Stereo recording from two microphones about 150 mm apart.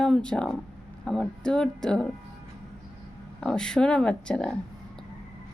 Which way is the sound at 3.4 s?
5° left (ahead or behind).